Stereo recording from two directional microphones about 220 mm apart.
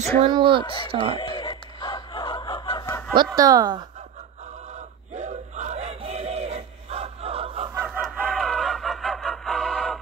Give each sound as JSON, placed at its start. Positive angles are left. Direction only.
{"t": 0.2, "sound": "speech", "side_deg": -25}
{"t": 1.2, "sound": "snicker", "side_deg": 20}
{"t": 3.3, "sound": "speech", "side_deg": -15}
{"t": 5.1, "sound": "battle cry", "side_deg": -30}
{"t": 7.7, "sound": "chicken", "side_deg": -5}